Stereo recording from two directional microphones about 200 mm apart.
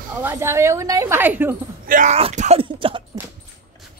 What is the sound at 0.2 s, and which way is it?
A woman's voice, 10° right (ahead or behind).